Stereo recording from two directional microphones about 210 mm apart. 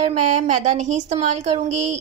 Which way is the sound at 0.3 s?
35° right (ahead or behind).